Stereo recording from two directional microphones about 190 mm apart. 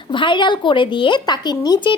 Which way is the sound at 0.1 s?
25° left (ahead or behind).